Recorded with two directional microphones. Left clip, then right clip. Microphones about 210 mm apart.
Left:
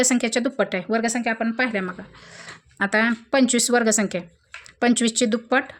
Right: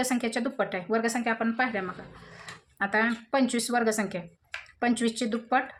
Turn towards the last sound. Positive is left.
turn(degrees=50)  # may be behind; listen again after turning